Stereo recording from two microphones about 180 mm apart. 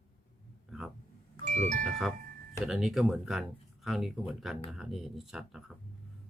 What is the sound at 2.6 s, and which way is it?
Speech, centre (ahead or behind).